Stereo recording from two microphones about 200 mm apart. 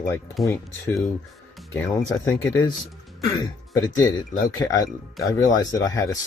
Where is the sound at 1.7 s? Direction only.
15° left (ahead or behind).